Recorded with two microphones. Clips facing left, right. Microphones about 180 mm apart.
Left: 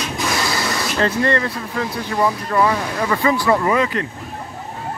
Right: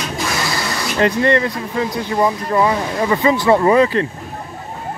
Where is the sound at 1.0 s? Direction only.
15° right (ahead or behind).